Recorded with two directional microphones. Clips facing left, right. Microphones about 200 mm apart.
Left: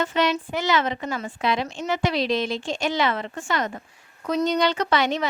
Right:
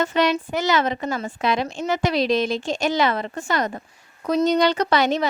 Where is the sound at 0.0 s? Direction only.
45° right (ahead or behind).